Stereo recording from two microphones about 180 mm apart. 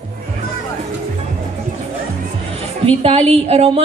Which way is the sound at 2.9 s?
35° right (ahead or behind).